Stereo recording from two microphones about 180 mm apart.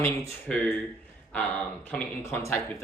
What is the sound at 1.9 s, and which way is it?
Speech, 15° left (ahead or behind).